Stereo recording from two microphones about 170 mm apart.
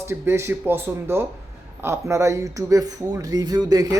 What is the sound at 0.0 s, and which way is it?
A man's voice, 15° right (ahead or behind).